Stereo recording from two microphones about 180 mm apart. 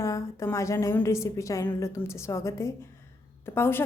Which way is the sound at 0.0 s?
15° left (ahead or behind).